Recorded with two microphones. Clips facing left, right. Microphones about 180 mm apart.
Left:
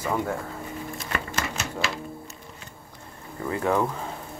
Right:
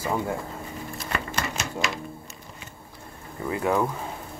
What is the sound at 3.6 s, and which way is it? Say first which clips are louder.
Speech: even; 5° right (ahead or behind).